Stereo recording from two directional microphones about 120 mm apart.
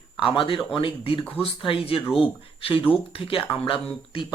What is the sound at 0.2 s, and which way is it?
Speech, 45° left (ahead or behind).